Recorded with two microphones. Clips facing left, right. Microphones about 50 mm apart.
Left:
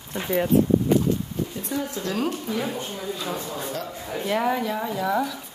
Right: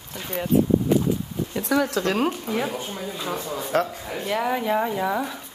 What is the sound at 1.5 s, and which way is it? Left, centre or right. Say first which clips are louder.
Speech: right 7 dB; right.